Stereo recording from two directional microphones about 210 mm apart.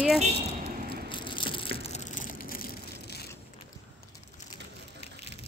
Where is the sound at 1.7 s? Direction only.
35° left (ahead or behind).